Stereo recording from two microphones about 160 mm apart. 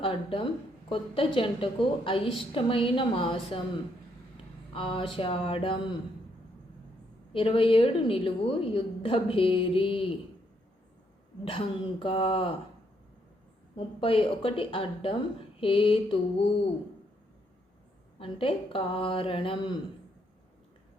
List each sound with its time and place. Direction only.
0.0 s a woman's voice: 35° left (ahead or behind)
4.7 s a woman's voice: 35° left (ahead or behind)
7.3 s a woman's voice: 35° left (ahead or behind)
11.4 s a woman's voice: 35° left (ahead or behind)
13.7 s a woman's voice: 35° left (ahead or behind)
18.2 s a woman's voice: 35° left (ahead or behind)